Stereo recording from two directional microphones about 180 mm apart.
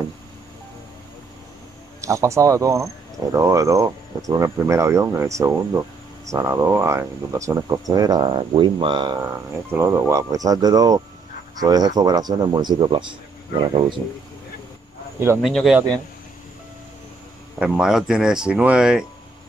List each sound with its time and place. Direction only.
2.0 s speech: 15° right (ahead or behind)
9.7 s speech: 15° right (ahead or behind)
15.1 s speech: 10° right (ahead or behind)
15.4 s speech: centre (ahead or behind)
17.6 s speech: 5° right (ahead or behind)